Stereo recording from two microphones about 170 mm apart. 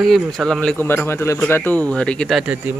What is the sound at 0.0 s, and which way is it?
Speech, centre (ahead or behind).